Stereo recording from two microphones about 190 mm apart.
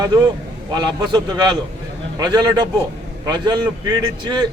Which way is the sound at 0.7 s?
25° right (ahead or behind).